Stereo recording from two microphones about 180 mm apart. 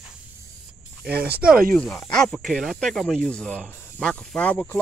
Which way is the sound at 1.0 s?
10° right (ahead or behind).